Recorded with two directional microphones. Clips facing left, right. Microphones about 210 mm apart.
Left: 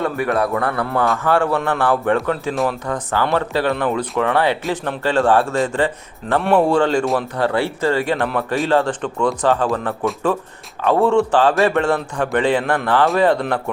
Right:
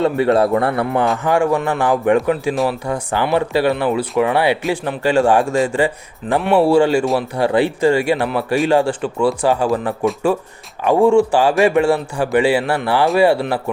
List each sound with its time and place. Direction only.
0.0 s a man's voice: 25° right (ahead or behind); by 7.3 s 5° right (ahead or behind)
7.3 s speech: 15° right (ahead or behind)